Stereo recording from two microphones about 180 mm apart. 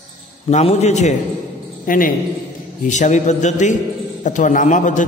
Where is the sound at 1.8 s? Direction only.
50° left (ahead or behind).